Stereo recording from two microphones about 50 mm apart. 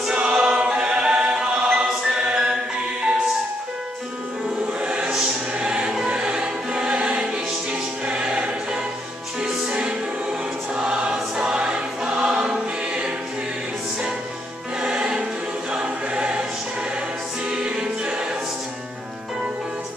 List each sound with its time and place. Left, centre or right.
0.1 s choir: right
4.8 s choir: right
9.4 s music: centre
10.8 s choir: centre
14.8 s music: centre
15.7 s choir: centre
17.5 s music: centre